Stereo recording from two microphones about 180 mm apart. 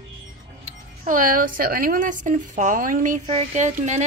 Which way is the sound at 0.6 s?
50° right (ahead or behind).